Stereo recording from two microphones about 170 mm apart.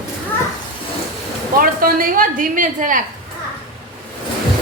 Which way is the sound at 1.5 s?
55° right (ahead or behind).